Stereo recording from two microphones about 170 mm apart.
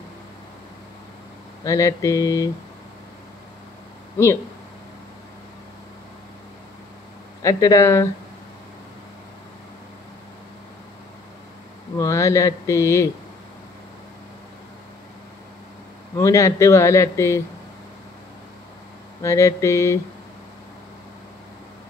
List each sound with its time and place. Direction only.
1.6 s speech: 20° left (ahead or behind)
7.4 s speech: 20° left (ahead or behind)
12.0 s speech: 20° left (ahead or behind)
16.2 s speech: 15° left (ahead or behind)
19.2 s speech: 15° left (ahead or behind)